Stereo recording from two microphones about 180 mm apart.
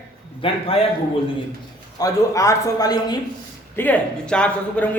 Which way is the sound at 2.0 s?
20° left (ahead or behind).